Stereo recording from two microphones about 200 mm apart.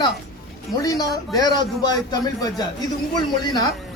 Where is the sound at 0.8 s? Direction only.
20° left (ahead or behind).